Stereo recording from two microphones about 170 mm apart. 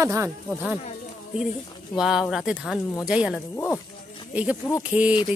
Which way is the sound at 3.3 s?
15° left (ahead or behind).